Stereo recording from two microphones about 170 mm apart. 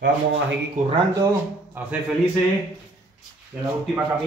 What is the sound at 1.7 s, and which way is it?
Speech, 10° right (ahead or behind).